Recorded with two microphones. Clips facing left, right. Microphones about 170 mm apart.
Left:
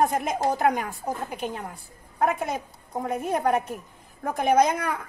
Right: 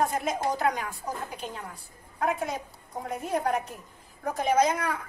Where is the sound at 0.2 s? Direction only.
55° left (ahead or behind).